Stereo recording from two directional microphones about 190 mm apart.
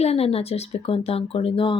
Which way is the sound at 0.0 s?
30° left (ahead or behind).